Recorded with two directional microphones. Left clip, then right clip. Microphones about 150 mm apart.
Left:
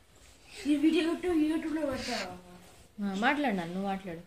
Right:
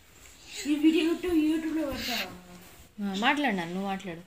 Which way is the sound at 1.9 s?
30° left (ahead or behind).